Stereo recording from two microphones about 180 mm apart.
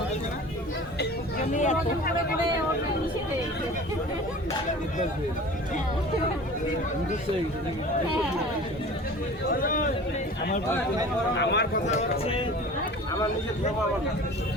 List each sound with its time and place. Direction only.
1.5 s speech: 40° left (ahead or behind)
9.5 s speech: 50° left (ahead or behind)
11.3 s a man's voice: 70° left (ahead or behind)
11.7 s speech: 40° left (ahead or behind)